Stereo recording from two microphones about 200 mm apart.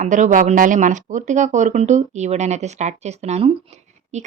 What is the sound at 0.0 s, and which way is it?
Speech, 40° right (ahead or behind).